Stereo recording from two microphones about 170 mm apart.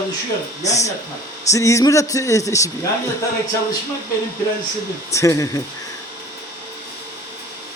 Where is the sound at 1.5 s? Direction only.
20° left (ahead or behind).